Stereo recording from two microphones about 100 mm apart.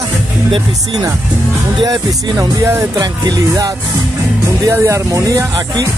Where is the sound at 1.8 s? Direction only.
40° right (ahead or behind).